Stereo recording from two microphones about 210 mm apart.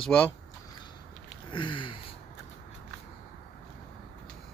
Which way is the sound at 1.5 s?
25° left (ahead or behind).